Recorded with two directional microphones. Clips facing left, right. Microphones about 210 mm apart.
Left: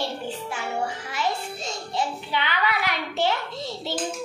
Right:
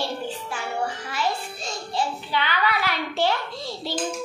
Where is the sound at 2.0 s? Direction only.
20° left (ahead or behind).